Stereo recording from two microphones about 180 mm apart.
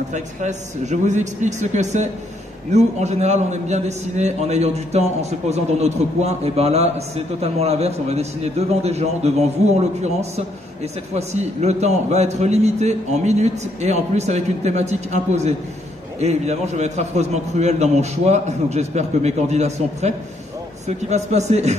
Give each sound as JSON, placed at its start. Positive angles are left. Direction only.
{"t": 0.1, "sound": "a man's voice", "side_deg": -40}